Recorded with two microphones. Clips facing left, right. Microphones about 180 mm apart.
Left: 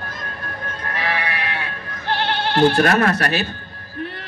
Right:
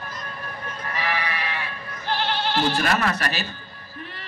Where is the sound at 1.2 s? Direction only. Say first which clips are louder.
Left 3 dB; 65° left (ahead or behind).